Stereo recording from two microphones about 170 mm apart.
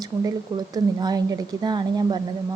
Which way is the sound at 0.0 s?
20° right (ahead or behind).